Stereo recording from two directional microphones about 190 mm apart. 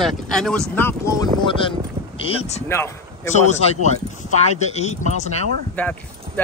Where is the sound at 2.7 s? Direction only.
15° left (ahead or behind).